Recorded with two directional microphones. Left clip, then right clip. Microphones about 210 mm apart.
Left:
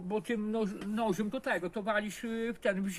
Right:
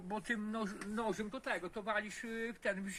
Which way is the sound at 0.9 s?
50° left (ahead or behind).